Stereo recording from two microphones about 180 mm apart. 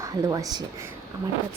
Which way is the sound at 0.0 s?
20° right (ahead or behind).